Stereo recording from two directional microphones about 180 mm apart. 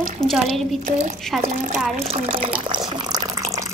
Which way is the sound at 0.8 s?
45° right (ahead or behind).